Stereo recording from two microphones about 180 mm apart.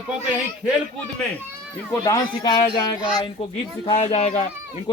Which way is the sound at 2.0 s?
20° left (ahead or behind).